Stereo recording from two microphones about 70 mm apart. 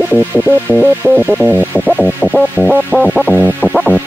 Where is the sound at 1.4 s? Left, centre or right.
Centre.